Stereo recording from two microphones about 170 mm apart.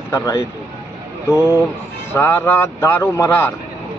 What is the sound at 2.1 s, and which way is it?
Speech, 10° left (ahead or behind).